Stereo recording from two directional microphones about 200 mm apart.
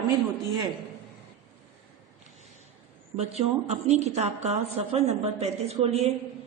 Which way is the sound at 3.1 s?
30° right (ahead or behind).